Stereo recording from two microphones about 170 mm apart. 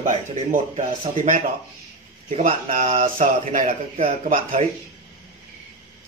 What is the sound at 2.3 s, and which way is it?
A man's voice, 40° right (ahead or behind).